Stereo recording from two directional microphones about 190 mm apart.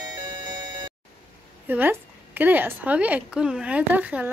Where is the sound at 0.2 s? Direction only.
20° right (ahead or behind).